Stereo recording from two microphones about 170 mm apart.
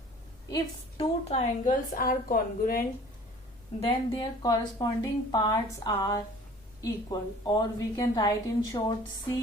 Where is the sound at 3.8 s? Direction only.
25° left (ahead or behind).